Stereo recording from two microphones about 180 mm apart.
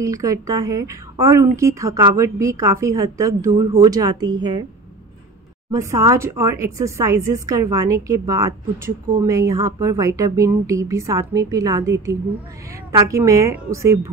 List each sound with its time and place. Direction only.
0.0 s speech: 20° right (ahead or behind)
5.7 s speech: 15° right (ahead or behind)